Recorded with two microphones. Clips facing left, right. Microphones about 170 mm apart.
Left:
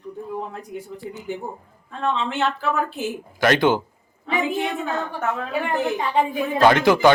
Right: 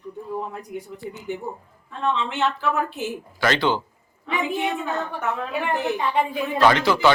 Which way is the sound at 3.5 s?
50° left (ahead or behind).